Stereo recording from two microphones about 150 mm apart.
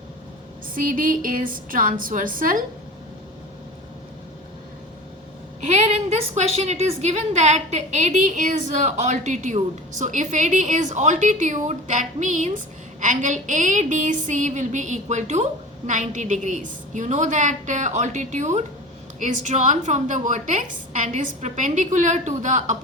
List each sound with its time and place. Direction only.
0.7 s a woman's voice: 65° right (ahead or behind)
5.6 s a woman's voice: 50° right (ahead or behind)